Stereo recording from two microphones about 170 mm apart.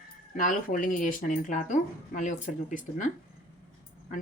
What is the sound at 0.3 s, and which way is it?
Speech, 50° left (ahead or behind).